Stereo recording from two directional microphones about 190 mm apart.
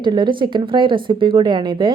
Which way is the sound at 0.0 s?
25° right (ahead or behind).